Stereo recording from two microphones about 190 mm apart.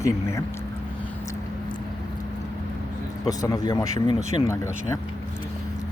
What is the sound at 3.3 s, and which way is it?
Speech, 20° left (ahead or behind).